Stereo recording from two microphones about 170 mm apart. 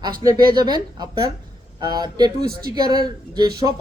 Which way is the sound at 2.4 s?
65° right (ahead or behind).